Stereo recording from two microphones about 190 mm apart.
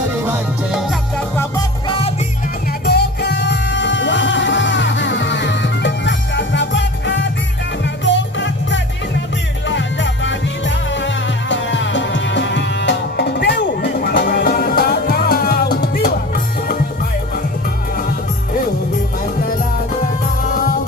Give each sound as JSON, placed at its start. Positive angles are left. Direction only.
{"t": 0.3, "sound": "music", "side_deg": -5}
{"t": 2.8, "sound": "music", "side_deg": 60}
{"t": 19.2, "sound": "music", "side_deg": 50}